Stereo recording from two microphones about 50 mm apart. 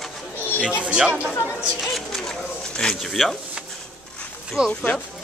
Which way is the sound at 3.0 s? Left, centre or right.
Centre.